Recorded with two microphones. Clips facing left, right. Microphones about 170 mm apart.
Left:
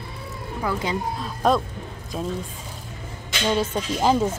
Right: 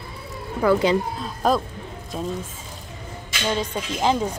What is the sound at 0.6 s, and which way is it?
Speech, 65° right (ahead or behind).